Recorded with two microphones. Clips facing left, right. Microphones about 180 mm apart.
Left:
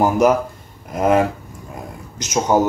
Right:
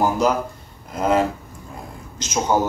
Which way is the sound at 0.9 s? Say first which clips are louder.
Left 3 dB; 20° left (ahead or behind).